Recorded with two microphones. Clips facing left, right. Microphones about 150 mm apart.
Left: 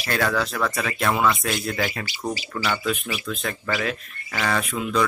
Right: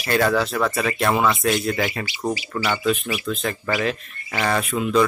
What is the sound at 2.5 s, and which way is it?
Speech, 15° right (ahead or behind).